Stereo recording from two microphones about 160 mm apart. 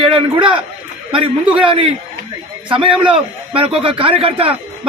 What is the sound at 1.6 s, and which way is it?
A man's voice, 35° right (ahead or behind).